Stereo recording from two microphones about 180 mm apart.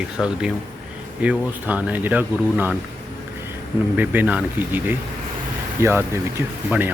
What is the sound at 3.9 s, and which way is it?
Speech, 10° right (ahead or behind).